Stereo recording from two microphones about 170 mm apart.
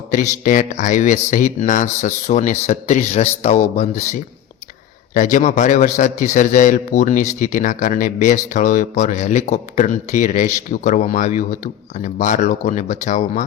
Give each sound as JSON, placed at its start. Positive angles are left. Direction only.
{"t": 0.1, "sound": "speech", "side_deg": 50}